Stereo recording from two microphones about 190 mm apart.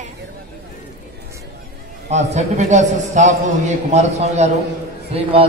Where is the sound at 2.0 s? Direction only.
35° right (ahead or behind).